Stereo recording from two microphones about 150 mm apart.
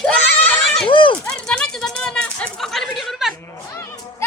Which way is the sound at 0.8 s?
35° left (ahead or behind).